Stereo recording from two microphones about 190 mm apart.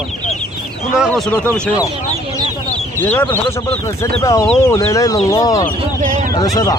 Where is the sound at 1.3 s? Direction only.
10° left (ahead or behind).